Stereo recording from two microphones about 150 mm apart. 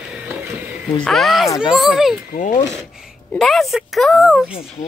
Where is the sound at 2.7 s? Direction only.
Centre (ahead or behind).